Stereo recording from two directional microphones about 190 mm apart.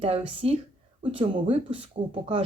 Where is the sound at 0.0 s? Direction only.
30° right (ahead or behind).